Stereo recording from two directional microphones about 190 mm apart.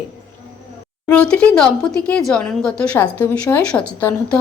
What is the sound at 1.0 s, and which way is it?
Speech, 5° left (ahead or behind).